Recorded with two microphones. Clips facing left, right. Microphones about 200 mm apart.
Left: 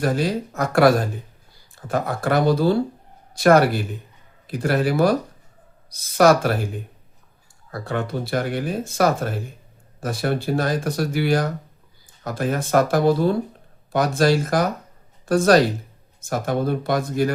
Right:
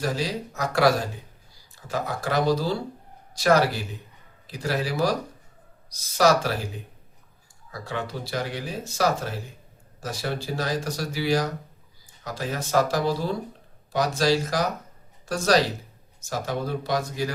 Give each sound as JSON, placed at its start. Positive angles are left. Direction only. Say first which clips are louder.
{"t": 0.0, "sound": "speech", "louder": "left 6 dB", "side_deg": 55}
{"t": 7.7, "sound": "speech", "louder": "left 6 dB", "side_deg": 55}